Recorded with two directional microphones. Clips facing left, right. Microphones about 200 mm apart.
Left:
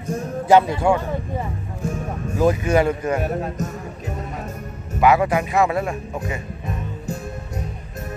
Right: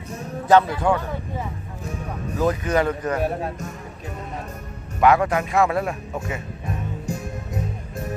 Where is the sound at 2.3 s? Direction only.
10° left (ahead or behind).